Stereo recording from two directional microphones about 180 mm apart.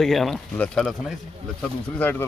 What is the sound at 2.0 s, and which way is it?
Speech, 10° left (ahead or behind).